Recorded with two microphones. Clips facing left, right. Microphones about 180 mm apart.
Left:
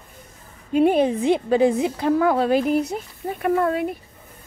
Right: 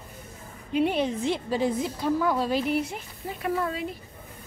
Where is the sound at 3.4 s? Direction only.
55° left (ahead or behind).